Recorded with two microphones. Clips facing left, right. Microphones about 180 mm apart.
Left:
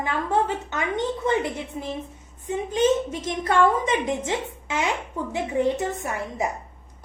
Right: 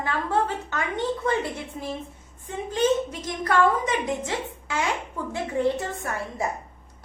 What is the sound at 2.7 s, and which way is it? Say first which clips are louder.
A woman's voice: left 1 dB; 20° left (ahead or behind).